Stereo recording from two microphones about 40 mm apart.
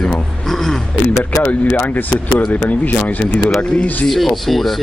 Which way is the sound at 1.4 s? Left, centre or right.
Left.